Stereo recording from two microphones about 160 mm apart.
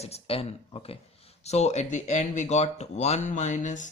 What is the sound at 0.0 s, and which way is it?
Speech, 40° left (ahead or behind).